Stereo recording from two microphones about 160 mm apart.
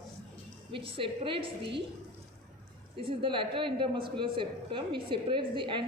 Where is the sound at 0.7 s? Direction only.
30° right (ahead or behind).